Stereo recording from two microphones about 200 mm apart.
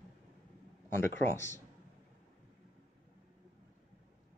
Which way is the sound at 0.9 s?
10° left (ahead or behind).